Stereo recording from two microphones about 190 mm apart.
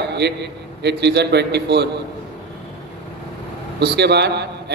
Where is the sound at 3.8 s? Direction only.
60° right (ahead or behind).